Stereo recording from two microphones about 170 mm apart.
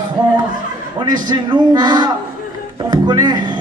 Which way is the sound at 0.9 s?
25° right (ahead or behind).